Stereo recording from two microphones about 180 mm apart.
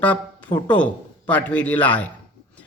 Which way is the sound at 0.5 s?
25° left (ahead or behind).